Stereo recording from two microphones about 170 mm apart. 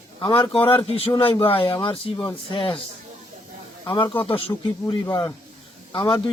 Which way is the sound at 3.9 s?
30° left (ahead or behind).